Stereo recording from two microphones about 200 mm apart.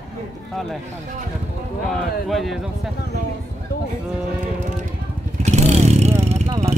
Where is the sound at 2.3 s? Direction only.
Centre (ahead or behind).